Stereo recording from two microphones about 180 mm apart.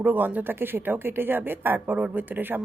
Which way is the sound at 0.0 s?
10° right (ahead or behind).